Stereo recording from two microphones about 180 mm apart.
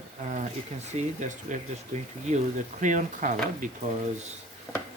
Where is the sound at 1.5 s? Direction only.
45° right (ahead or behind).